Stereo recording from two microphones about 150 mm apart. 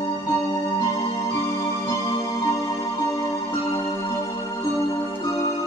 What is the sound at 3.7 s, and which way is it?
Music, 25° left (ahead or behind).